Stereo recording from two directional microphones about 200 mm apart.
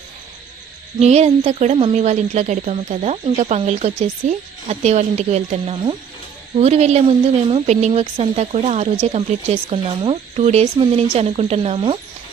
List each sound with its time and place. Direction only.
1.0 s a woman's voice: 35° right (ahead or behind)